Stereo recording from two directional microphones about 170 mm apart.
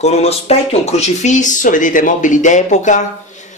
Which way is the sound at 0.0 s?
40° left (ahead or behind).